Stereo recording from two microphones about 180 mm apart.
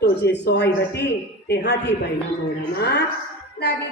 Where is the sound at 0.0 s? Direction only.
65° left (ahead or behind).